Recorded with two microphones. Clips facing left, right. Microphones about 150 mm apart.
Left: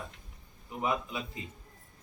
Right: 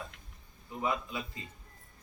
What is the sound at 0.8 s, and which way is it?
Speech, 20° left (ahead or behind).